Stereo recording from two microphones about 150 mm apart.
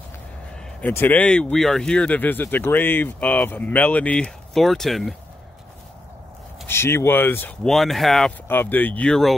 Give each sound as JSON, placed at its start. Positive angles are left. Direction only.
{"t": 0.7, "sound": "speech", "side_deg": 15}
{"t": 6.7, "sound": "speech", "side_deg": 15}
{"t": 7.6, "sound": "speech", "side_deg": 0}
{"t": 8.5, "sound": "speech", "side_deg": 15}